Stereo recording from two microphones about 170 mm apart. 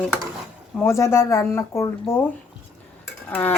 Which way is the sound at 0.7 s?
15° left (ahead or behind).